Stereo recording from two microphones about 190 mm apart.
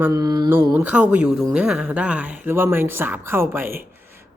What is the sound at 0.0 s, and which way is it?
Mantra, 20° right (ahead or behind).